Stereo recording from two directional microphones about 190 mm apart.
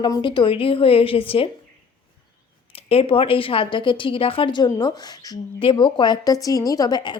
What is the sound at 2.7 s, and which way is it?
Speech, 30° left (ahead or behind).